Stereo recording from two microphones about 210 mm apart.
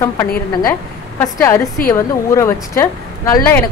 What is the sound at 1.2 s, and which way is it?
A woman's voice, 15° left (ahead or behind).